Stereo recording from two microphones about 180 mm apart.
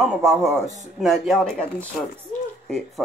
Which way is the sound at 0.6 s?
40° right (ahead or behind).